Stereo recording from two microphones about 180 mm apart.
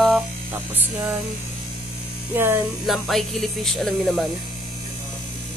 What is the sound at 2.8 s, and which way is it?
Speech, centre (ahead or behind).